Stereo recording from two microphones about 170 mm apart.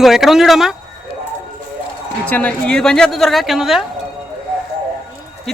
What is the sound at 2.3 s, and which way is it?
A woman's voice, 10° left (ahead or behind).